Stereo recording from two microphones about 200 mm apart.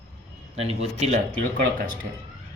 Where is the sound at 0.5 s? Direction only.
30° right (ahead or behind).